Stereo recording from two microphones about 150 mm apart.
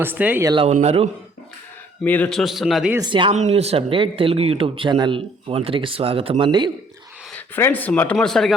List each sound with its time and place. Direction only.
0.0 s speech: 10° right (ahead or behind)
0.7 s a man's voice: 45° right (ahead or behind)
2.0 s speech: 10° left (ahead or behind)
2.4 s a man's voice: centre (ahead or behind)
3.0 s speech: 35° right (ahead or behind)
3.3 s speech: 45° right (ahead or behind)
7.3 s speech: 10° left (ahead or behind)